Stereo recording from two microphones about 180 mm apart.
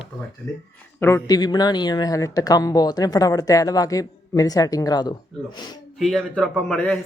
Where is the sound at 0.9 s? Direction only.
15° left (ahead or behind).